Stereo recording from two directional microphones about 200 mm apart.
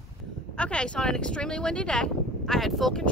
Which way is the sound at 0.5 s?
5° left (ahead or behind).